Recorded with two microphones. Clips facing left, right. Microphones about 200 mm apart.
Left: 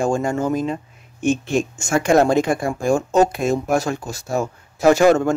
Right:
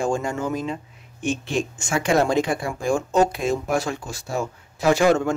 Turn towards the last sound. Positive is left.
turn(degrees=45)  # may be behind; listen again after turning